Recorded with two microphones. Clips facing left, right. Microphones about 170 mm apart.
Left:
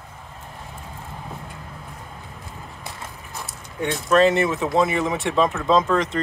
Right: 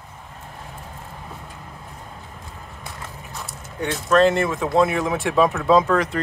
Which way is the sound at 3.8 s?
5° left (ahead or behind).